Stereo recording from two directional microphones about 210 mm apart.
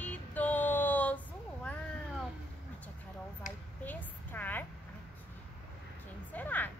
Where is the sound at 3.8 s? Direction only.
10° left (ahead or behind).